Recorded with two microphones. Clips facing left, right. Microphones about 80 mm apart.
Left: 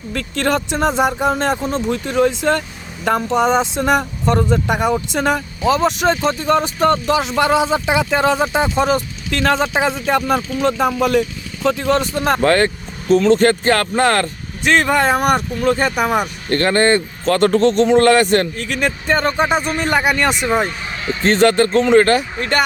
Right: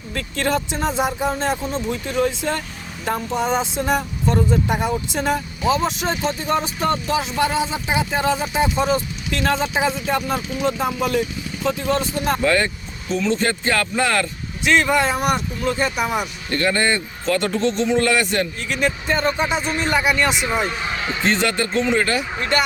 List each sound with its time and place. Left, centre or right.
0.1 s speech: left
8.8 s speech: left
11.8 s speech: left
12.4 s speech: left
20.7 s speech: right
21.2 s speech: left